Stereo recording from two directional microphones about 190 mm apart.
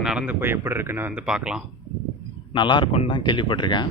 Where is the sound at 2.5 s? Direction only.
25° left (ahead or behind).